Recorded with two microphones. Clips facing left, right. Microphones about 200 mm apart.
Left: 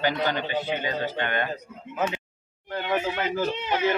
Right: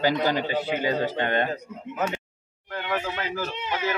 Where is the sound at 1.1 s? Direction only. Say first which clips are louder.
Right 3 dB; 30° right (ahead or behind).